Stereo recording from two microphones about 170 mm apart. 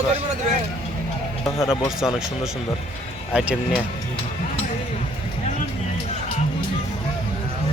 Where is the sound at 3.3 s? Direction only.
5° right (ahead or behind).